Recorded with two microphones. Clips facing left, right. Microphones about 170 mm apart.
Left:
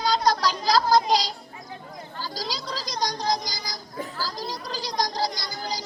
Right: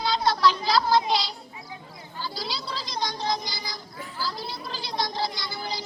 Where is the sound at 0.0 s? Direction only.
40° left (ahead or behind).